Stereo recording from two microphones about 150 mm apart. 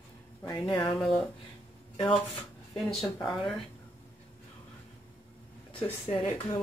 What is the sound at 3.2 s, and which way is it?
Speech, 30° left (ahead or behind).